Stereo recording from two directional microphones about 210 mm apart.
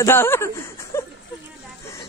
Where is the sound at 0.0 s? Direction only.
10° left (ahead or behind).